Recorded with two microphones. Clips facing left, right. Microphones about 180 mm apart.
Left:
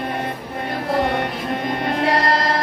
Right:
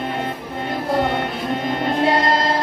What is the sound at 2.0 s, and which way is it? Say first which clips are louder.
Music: right 1 dB; 25° right (ahead or behind).